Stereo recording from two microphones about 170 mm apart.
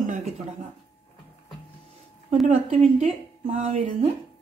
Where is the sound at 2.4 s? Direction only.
40° right (ahead or behind).